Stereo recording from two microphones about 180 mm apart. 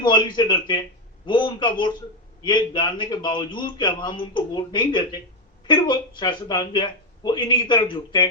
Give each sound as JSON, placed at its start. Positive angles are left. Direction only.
{"t": 0.0, "sound": "a man's voice", "side_deg": 25}